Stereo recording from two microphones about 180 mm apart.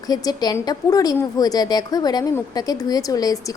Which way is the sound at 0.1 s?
20° left (ahead or behind).